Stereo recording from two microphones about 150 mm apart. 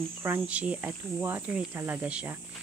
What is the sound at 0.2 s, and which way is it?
Speech, 10° right (ahead or behind).